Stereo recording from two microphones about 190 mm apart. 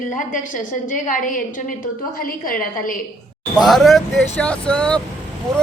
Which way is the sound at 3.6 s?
Centre (ahead or behind).